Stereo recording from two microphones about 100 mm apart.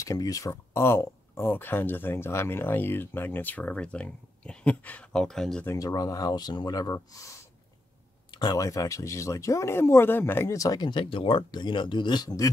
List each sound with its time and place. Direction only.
0.0 s speech: 35° left (ahead or behind); by 5.6 s 5° left (ahead or behind)
5.7 s speech: 35° left (ahead or behind)
8.3 s speech: 45° left (ahead or behind); by 11.4 s 60° left (ahead or behind)
11.5 s a man's voice: 50° left (ahead or behind)